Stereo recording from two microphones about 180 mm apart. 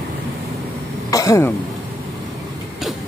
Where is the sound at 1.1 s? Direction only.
20° left (ahead or behind).